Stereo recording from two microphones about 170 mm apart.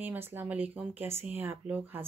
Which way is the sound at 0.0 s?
10° right (ahead or behind).